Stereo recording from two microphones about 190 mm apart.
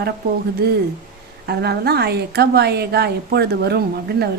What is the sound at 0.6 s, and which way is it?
A woman's voice, 55° right (ahead or behind).